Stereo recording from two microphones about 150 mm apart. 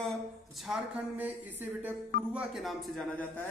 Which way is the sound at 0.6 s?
10° right (ahead or behind).